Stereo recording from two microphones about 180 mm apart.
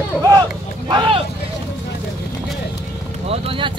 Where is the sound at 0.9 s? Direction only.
25° right (ahead or behind).